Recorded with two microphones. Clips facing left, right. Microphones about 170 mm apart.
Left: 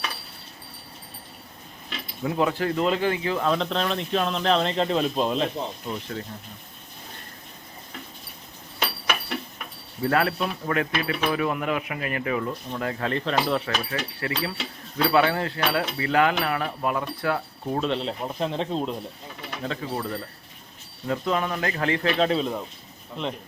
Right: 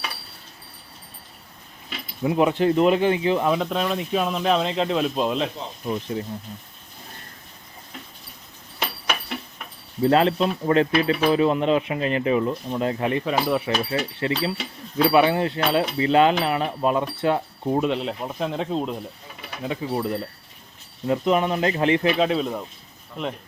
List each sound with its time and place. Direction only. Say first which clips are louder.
2.2 s speech: right 5 dB; 20° right (ahead or behind)
3.5 s speech: right 2 dB; 10° right (ahead or behind)
5.8 s speech: right 5 dB; 15° right (ahead or behind)
10.0 s speech: right 5 dB; 25° right (ahead or behind)
14.2 s speech: right 4 dB; 20° right (ahead or behind)
17.8 s speech: right 2 dB; 5° right (ahead or behind)
19.6 s speech: right 4 dB; 15° right (ahead or behind)
22.2 s speech: right 1 dB; 5° right (ahead or behind)